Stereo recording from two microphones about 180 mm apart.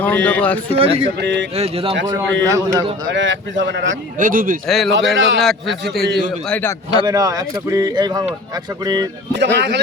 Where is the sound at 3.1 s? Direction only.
90° right.